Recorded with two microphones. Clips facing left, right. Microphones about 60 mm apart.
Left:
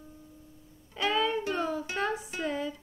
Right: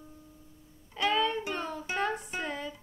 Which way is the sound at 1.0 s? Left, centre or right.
Centre.